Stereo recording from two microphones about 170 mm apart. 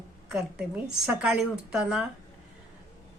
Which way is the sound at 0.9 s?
5° right (ahead or behind).